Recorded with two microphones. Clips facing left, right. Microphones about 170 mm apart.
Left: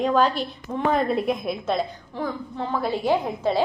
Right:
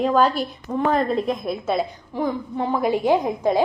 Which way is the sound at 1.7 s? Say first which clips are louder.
Right 3 dB; 15° right (ahead or behind).